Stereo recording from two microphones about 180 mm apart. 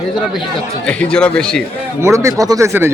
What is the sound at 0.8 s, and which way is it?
Speech, 5° left (ahead or behind).